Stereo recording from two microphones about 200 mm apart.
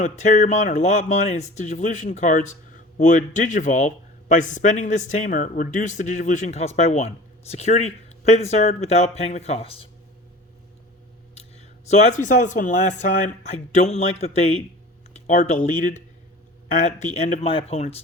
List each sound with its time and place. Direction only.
0.0 s speech: 35° left (ahead or behind)
11.9 s speech: 35° left (ahead or behind)